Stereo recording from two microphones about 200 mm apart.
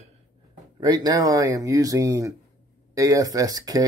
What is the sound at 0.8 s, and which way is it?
Speech, 20° right (ahead or behind).